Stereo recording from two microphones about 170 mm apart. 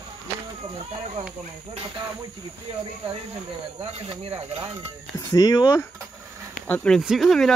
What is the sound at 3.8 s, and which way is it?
Speech, 35° right (ahead or behind).